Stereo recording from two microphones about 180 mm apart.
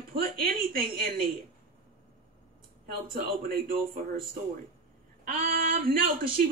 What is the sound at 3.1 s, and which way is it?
A woman's voice, 55° right (ahead or behind).